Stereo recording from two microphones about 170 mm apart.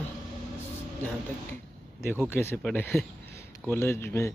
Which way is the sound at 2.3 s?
15° left (ahead or behind).